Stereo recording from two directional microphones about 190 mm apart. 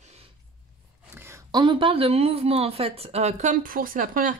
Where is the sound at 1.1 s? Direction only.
15° right (ahead or behind).